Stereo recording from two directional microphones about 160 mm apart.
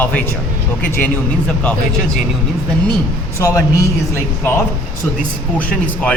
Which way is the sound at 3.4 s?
20° left (ahead or behind).